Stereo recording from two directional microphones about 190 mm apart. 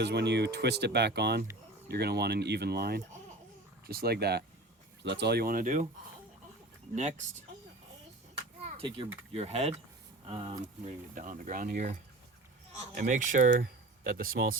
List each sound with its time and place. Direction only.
0.0 s speech: 60° right (ahead or behind); by 5.9 s 45° right (ahead or behind)
8.6 s speech: 30° right (ahead or behind)
11.1 s speech: 45° right (ahead or behind)